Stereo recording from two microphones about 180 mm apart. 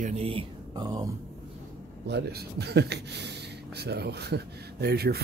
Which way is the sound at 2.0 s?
70° right (ahead or behind).